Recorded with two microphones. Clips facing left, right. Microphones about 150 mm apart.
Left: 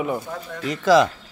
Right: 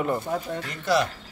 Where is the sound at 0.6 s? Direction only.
90° left.